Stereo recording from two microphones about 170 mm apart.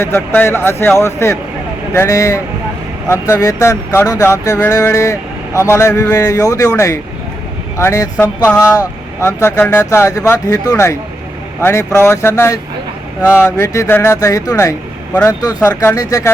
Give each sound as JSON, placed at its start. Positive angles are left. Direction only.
{"t": 0.0, "sound": "speech", "side_deg": 15}
{"t": 13.6, "sound": "speech", "side_deg": 15}